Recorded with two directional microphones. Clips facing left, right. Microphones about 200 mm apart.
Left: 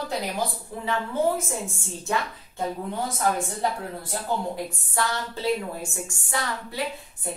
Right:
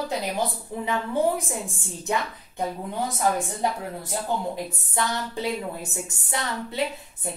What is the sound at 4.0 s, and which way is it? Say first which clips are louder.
Speech: right 1 dB; 20° right (ahead or behind).